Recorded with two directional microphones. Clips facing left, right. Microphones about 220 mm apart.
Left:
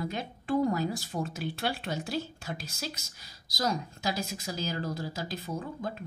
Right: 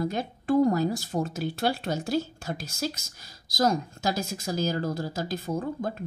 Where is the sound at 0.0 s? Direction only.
45° right (ahead or behind).